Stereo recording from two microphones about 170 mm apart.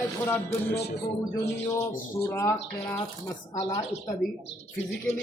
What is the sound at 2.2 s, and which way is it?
Speech, 15° left (ahead or behind).